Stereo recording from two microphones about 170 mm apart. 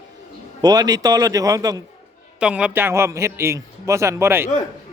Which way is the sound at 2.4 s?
5° right (ahead or behind).